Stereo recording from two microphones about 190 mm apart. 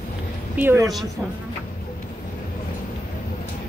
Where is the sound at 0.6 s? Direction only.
15° right (ahead or behind).